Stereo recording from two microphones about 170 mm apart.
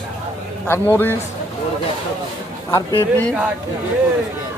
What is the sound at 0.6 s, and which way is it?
Speech, 15° left (ahead or behind).